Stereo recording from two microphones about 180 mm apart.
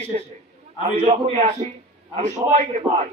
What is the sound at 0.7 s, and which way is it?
A man's voice, 35° right (ahead or behind).